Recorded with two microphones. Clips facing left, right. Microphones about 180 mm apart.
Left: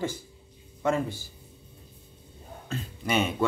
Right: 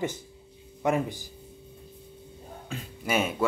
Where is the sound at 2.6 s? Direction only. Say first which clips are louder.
Left 1 dB; 10° right (ahead or behind).